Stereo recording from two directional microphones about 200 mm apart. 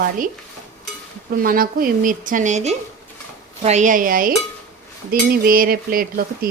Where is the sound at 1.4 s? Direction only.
45° right (ahead or behind).